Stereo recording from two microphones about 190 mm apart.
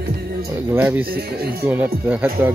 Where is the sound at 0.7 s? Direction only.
10° right (ahead or behind).